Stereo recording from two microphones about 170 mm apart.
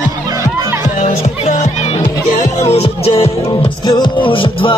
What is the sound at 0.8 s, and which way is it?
Music, 40° left (ahead or behind).